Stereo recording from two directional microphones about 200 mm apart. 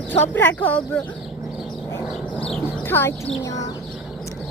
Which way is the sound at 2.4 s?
10° left (ahead or behind).